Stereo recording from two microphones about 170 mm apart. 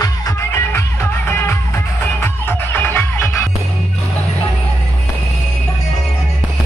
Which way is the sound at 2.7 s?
10° left (ahead or behind).